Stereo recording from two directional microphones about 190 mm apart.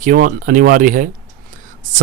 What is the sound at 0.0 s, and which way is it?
Speech, 45° right (ahead or behind).